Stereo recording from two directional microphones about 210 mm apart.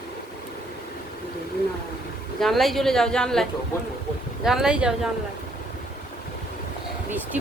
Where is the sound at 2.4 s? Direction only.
Centre (ahead or behind).